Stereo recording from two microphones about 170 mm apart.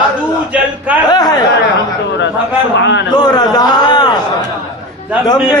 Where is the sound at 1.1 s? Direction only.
25° left (ahead or behind).